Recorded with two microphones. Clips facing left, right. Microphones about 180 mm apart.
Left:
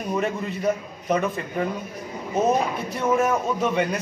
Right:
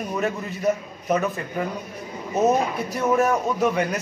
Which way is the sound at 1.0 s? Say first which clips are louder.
Even; 5° right (ahead or behind).